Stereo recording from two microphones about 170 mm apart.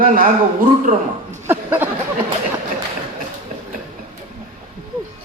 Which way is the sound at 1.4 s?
10° right (ahead or behind).